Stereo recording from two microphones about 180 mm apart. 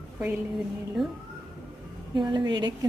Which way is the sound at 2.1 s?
25° right (ahead or behind).